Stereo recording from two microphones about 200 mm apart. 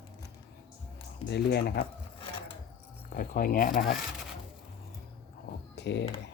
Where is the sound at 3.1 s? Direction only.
45° left (ahead or behind).